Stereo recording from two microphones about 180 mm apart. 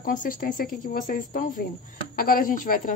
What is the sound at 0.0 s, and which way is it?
A woman's voice, 50° left (ahead or behind).